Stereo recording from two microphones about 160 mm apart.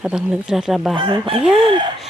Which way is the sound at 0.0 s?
5° right (ahead or behind).